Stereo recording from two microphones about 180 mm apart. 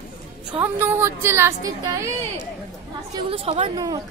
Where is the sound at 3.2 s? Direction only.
30° right (ahead or behind).